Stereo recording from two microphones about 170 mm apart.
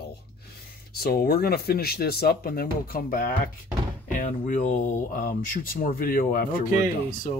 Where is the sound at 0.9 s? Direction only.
60° left (ahead or behind).